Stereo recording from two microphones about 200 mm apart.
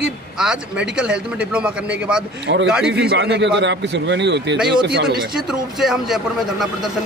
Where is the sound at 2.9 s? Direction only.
60° right (ahead or behind).